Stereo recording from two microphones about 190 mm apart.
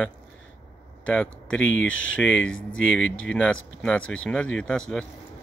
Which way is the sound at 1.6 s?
90° left.